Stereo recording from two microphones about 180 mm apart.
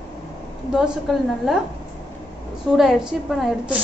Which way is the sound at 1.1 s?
Centre (ahead or behind).